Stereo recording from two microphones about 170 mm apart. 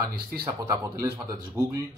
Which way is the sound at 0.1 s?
65° right (ahead or behind).